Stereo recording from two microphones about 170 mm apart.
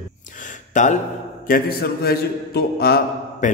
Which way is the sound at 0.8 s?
50° left (ahead or behind).